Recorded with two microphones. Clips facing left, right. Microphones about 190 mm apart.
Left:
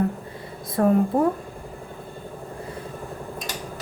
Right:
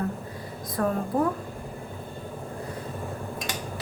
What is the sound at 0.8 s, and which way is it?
Speech, 30° left (ahead or behind).